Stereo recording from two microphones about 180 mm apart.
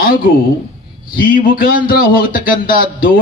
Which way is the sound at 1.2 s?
50° left (ahead or behind).